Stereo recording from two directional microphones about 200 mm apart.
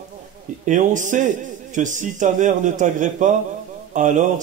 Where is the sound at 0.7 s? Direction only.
40° right (ahead or behind).